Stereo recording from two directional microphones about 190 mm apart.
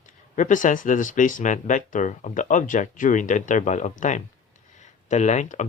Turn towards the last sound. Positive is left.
turn(degrees=40)  # may be behind; listen again after turning